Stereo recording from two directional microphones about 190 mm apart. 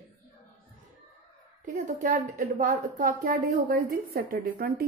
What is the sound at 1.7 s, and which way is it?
A woman's voice, 40° right (ahead or behind).